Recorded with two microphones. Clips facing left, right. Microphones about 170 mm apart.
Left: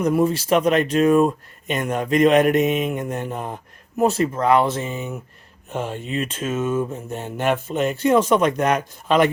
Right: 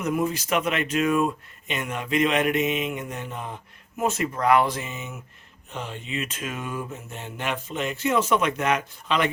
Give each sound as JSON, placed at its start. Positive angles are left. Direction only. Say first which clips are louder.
{"t": 0.0, "sound": "speech", "louder": "left 6 dB", "side_deg": 35}
{"t": 5.7, "sound": "speech", "louder": "left 7 dB", "side_deg": 45}
{"t": 7.1, "sound": "speech", "louder": "left 8 dB", "side_deg": 40}